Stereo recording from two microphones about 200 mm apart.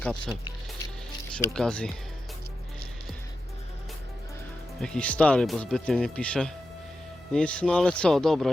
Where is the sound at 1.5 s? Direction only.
5° left (ahead or behind).